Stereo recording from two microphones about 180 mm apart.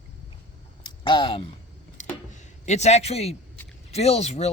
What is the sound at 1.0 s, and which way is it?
Speech, 25° left (ahead or behind).